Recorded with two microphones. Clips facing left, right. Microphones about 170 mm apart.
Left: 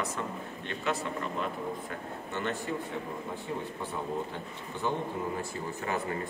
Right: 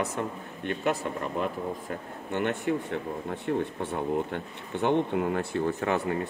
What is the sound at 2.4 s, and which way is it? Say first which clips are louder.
A man's voice: right 6 dB; 60° right (ahead or behind).